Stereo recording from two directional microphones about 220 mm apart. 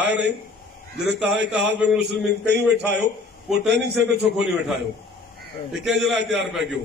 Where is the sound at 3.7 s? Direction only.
50° right (ahead or behind).